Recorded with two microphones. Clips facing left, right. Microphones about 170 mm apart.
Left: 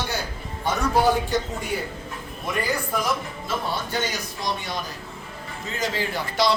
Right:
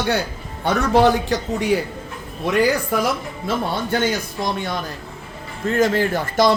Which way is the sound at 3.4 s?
55° right (ahead or behind).